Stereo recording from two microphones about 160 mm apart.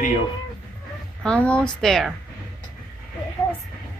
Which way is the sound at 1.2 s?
5° left (ahead or behind).